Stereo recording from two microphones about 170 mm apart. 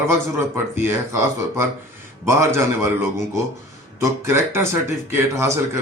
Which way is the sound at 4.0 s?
15° right (ahead or behind).